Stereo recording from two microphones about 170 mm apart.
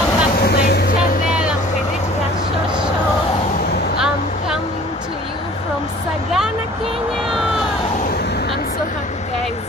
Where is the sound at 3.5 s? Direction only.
70° left (ahead or behind).